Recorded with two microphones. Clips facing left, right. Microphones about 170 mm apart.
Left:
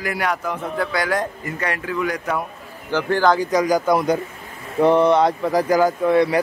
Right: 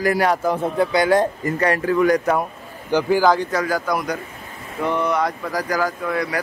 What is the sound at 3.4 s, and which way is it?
Speech, 15° left (ahead or behind).